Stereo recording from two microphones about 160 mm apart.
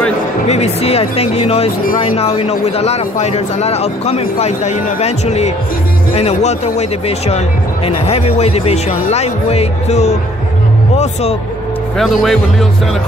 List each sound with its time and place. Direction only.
0.5 s speech: 40° left (ahead or behind)
12.0 s speech: centre (ahead or behind)